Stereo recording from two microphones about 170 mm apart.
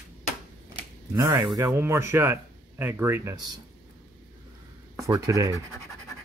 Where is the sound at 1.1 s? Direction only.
15° right (ahead or behind).